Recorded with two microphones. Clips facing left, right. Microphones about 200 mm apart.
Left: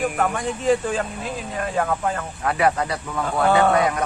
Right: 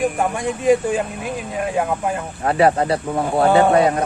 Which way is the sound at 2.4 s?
30° right (ahead or behind).